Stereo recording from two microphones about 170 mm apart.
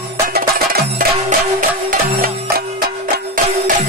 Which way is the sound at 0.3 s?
60° right (ahead or behind).